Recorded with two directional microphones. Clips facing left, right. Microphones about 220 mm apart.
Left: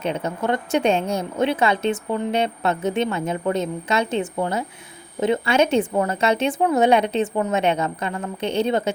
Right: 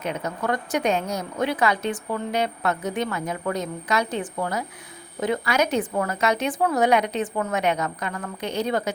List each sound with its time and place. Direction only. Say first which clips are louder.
0.0 s a woman's voice: left 4 dB; 30° left (ahead or behind)